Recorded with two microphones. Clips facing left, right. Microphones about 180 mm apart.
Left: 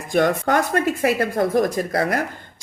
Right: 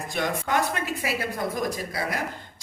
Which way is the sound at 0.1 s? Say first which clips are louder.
Left 9 dB; 50° left (ahead or behind).